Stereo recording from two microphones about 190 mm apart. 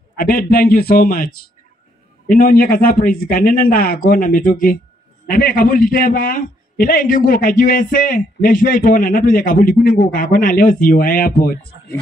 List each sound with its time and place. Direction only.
0.2 s a man's voice: 50° left (ahead or behind)